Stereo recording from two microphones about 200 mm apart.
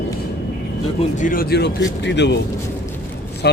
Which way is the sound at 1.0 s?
40° left (ahead or behind).